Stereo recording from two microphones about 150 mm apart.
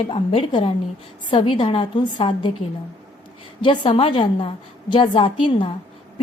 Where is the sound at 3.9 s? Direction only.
35° left (ahead or behind).